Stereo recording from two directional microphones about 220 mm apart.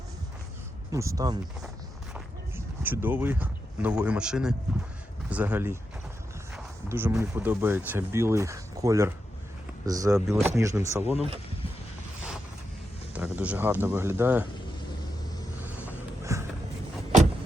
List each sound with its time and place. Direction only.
0.9 s speech: 15° right (ahead or behind)
13.1 s speech: 5° right (ahead or behind)
16.2 s a sound: 15° right (ahead or behind)